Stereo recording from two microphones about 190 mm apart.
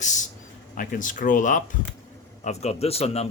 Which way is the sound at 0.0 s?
40° left (ahead or behind).